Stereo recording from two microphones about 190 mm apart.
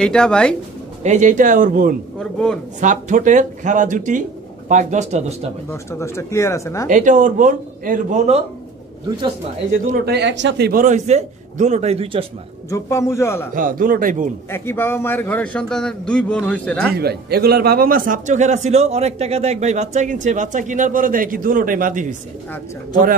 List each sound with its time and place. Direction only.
0.0 s speech: 5° left (ahead or behind)
1.0 s speech: 40° right (ahead or behind)
2.1 s speech: 5° left (ahead or behind)
2.8 s a man's voice: 40° right (ahead or behind)
5.7 s a man's voice: 15° left (ahead or behind)
6.9 s a man's voice: 40° right (ahead or behind)
9.9 s speech: 60° right (ahead or behind)
10.7 s a man's voice: 40° right (ahead or behind)
12.6 s a man's voice: 15° left (ahead or behind)
13.5 s speech: 45° right (ahead or behind)
14.5 s a man's voice: 10° left (ahead or behind)
16.9 s a man's voice: 55° right (ahead or behind)